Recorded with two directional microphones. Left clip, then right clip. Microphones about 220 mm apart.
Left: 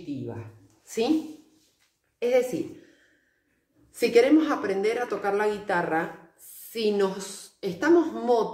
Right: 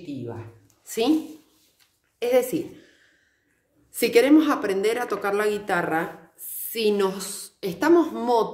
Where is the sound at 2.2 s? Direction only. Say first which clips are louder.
Right 2 dB; 50° right (ahead or behind).